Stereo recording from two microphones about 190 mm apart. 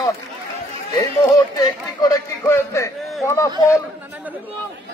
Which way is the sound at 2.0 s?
15° left (ahead or behind).